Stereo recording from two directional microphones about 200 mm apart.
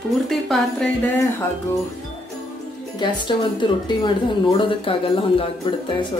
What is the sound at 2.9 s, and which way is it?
A woman's voice, 25° left (ahead or behind).